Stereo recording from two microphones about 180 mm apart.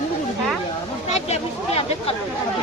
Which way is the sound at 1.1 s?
35° left (ahead or behind).